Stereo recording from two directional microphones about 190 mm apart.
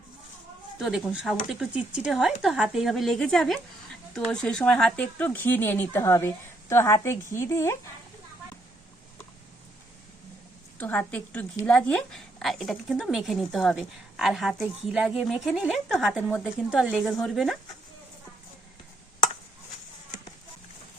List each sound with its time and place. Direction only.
0.8 s a woman's voice: 5° right (ahead or behind); by 7.8 s 15° left (ahead or behind)
10.8 s a woman's voice: 10° left (ahead or behind)